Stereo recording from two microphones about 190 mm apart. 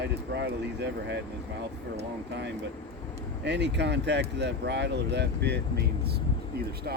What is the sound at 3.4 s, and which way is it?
Speech, 65° right (ahead or behind).